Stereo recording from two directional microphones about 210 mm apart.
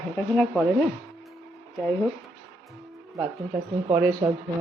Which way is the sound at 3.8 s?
15° right (ahead or behind).